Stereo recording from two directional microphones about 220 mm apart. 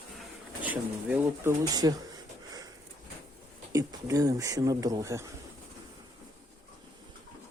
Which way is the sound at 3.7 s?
15° right (ahead or behind).